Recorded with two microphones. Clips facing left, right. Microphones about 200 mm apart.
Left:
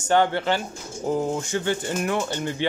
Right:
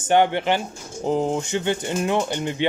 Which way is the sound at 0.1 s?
20° right (ahead or behind).